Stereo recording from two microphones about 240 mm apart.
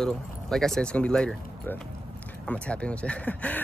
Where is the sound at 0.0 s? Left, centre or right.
Centre.